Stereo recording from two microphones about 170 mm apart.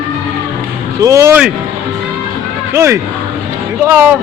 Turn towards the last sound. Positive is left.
turn(degrees=-10)  # may be behind; listen again after turning